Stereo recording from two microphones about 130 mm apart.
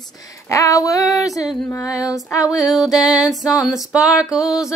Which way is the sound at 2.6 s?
Centre (ahead or behind).